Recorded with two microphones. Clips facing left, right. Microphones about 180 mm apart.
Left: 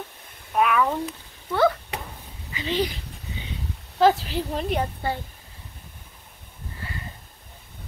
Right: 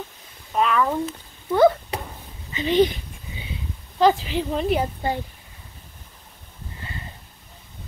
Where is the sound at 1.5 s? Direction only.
20° right (ahead or behind).